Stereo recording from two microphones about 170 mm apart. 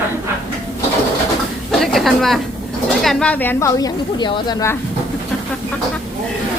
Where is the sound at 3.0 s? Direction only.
5° left (ahead or behind).